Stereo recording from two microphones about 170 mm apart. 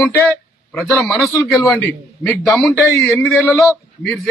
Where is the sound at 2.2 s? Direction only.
Centre (ahead or behind).